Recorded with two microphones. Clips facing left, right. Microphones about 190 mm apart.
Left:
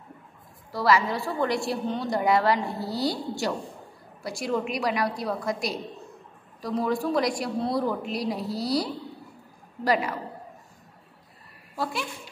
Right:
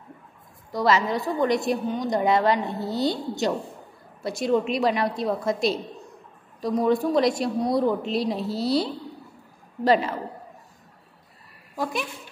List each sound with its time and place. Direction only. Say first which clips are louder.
0.7 s a woman's voice: right 1 dB; 20° right (ahead or behind)
11.7 s a woman's voice: right 2 dB; 15° right (ahead or behind)